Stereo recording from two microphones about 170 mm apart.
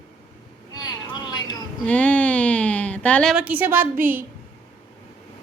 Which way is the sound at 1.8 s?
10° left (ahead or behind).